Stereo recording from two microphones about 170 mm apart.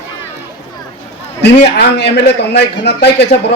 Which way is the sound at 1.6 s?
80° left.